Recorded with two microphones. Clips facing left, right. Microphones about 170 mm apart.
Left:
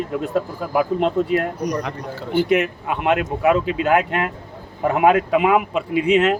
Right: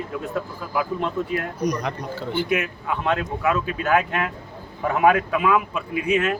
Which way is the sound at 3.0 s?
15° left (ahead or behind).